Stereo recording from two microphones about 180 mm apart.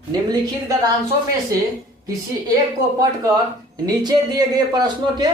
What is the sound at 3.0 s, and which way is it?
A man's voice, 20° right (ahead or behind).